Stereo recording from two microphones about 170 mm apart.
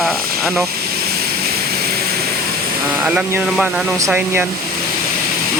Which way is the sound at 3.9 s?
15° right (ahead or behind).